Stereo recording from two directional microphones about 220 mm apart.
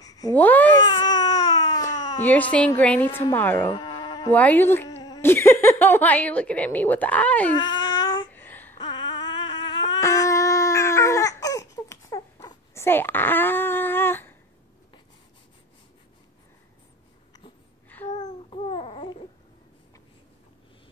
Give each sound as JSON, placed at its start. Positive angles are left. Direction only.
{"t": 0.0, "sound": "babbling", "side_deg": 10}
{"t": 0.8, "sound": "baby cry", "side_deg": 20}
{"t": 2.2, "sound": "speech", "side_deg": 5}
{"t": 3.7, "sound": "livestock", "side_deg": 20}
{"t": 4.3, "sound": "speech", "side_deg": 5}
{"t": 7.5, "sound": "a sound", "side_deg": 20}
{"t": 8.3, "sound": "babbling", "side_deg": 10}
{"t": 8.7, "sound": "a sound", "side_deg": 20}
{"t": 17.8, "sound": "babbling", "side_deg": 10}
{"t": 18.1, "sound": "babbling", "side_deg": 30}